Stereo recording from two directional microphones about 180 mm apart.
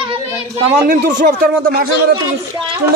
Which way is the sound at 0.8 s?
50° right (ahead or behind).